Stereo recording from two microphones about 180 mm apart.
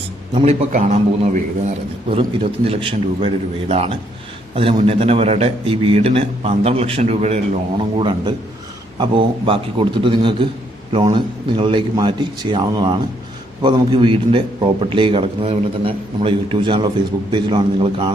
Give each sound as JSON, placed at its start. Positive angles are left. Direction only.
{"t": 0.3, "sound": "a man's voice", "side_deg": -35}